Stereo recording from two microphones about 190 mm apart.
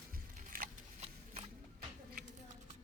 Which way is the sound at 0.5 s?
45° right (ahead or behind).